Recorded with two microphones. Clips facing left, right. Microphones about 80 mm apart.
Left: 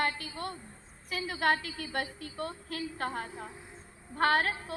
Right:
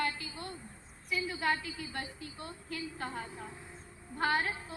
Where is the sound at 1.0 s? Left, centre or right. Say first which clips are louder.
Left 3 dB; left.